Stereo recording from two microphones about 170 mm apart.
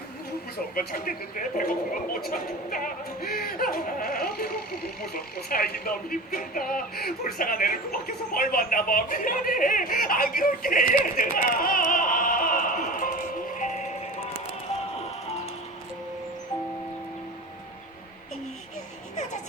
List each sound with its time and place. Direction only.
0.5 s speech: 60° left (ahead or behind)